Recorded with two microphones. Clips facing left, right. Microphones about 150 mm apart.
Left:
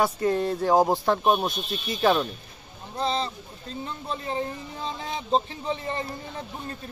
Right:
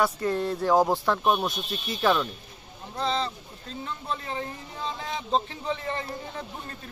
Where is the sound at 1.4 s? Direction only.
15° left (ahead or behind).